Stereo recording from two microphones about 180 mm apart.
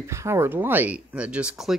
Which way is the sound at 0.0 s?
15° right (ahead or behind).